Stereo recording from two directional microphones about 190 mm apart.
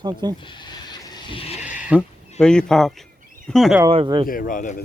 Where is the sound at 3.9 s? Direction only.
25° right (ahead or behind).